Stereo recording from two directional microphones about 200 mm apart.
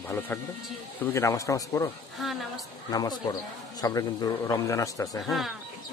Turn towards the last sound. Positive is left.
turn(degrees=0)  # may be behind; listen again after turning